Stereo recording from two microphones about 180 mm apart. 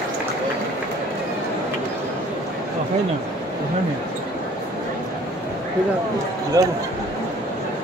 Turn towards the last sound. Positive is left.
turn(degrees=-20)  # may be behind; listen again after turning